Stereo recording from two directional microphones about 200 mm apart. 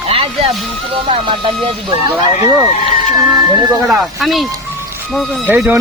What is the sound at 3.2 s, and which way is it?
Speech, 5° right (ahead or behind).